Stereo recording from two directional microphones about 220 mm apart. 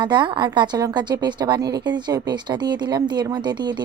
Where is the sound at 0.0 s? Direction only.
20° right (ahead or behind).